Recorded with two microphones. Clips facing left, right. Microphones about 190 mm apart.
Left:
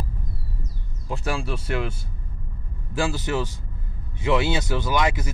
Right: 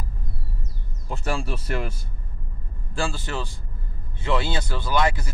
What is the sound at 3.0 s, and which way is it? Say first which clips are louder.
Speech: left 4 dB; 15° left (ahead or behind).